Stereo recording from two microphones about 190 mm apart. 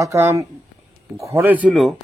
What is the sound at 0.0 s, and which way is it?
A man's voice, 15° right (ahead or behind).